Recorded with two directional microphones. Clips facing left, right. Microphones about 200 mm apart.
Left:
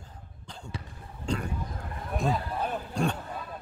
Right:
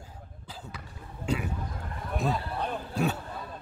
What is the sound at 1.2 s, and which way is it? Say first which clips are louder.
A man's voice: right 1 dB; 5° right (ahead or behind).